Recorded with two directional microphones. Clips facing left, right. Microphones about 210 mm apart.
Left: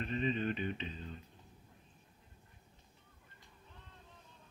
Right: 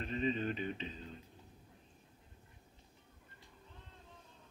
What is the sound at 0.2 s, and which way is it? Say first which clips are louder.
Speech: even; 40° right (ahead or behind).